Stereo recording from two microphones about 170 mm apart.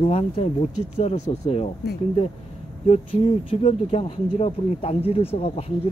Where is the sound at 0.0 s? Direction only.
35° left (ahead or behind).